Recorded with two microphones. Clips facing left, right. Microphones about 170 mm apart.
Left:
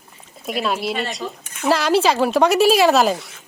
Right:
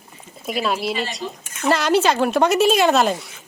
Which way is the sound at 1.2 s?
50° left (ahead or behind).